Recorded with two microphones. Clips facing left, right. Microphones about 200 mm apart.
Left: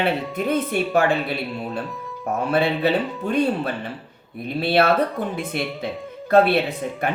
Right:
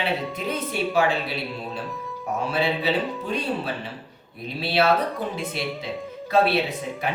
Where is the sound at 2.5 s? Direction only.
55° left (ahead or behind).